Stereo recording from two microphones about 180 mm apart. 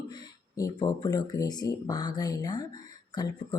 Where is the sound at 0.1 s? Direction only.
25° left (ahead or behind).